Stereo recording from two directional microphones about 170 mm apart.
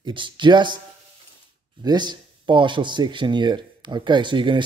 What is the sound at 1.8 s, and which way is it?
Speech, 25° right (ahead or behind).